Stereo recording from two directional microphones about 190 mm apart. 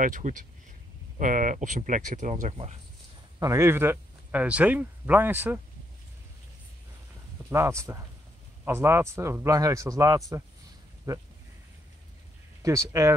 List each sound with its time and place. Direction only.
0.0 s speech: 45° right (ahead or behind)
3.3 s speech: 15° right (ahead or behind)
7.4 s speech: 15° right (ahead or behind)
12.6 s speech: 15° right (ahead or behind)